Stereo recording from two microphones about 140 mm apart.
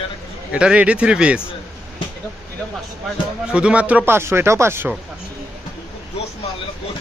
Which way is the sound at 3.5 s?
10° right (ahead or behind).